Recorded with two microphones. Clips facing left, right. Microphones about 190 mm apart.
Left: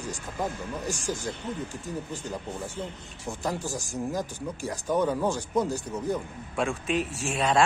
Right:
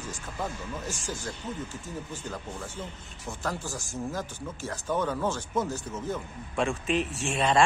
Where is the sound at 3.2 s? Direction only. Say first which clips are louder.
Left 3 dB; 15° left (ahead or behind).